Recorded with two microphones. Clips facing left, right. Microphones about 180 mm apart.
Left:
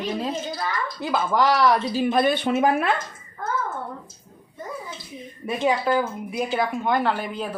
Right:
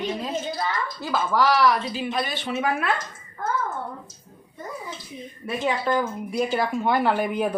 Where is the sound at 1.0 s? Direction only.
20° left (ahead or behind).